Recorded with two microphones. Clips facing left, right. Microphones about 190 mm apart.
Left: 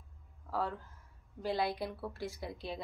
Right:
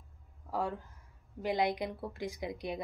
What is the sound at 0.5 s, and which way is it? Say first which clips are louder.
Speech: right 1 dB; 15° right (ahead or behind).